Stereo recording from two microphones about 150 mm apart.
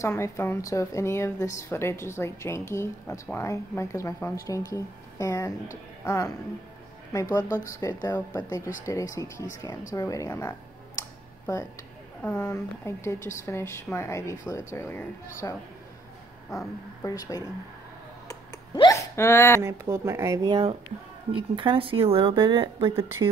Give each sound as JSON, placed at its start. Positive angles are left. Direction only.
{"t": 0.0, "sound": "a woman's voice", "side_deg": 15}
{"t": 11.0, "sound": "a sound", "side_deg": 20}
{"t": 12.2, "sound": "a woman's voice", "side_deg": 15}
{"t": 18.9, "sound": "speech", "side_deg": 20}
{"t": 19.6, "sound": "speech", "side_deg": -20}